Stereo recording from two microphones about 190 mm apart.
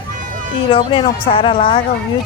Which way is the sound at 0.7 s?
25° left (ahead or behind).